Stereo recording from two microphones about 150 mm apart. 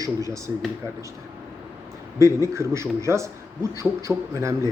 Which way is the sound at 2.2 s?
20° right (ahead or behind).